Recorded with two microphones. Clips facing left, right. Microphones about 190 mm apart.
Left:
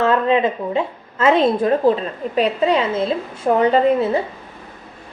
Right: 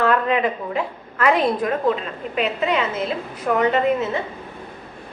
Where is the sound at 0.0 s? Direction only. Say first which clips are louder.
Left 3 dB; 25° left (ahead or behind).